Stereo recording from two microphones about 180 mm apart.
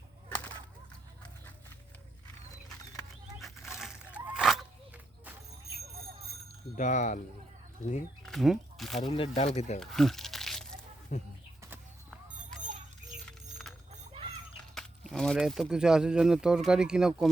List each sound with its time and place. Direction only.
0.3 s whip: 10° left (ahead or behind)
3.4 s a sound: centre (ahead or behind)
6.7 s speech: 45° left (ahead or behind)
8.2 s a sound: centre (ahead or behind)
9.0 s speech: 30° left (ahead or behind)
9.8 s crumpling: centre (ahead or behind)
11.1 s speech: 40° left (ahead or behind)
13.2 s keys jangling: centre (ahead or behind)
14.8 s speech: centre (ahead or behind)